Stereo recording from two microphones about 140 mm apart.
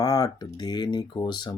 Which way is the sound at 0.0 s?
25° left (ahead or behind).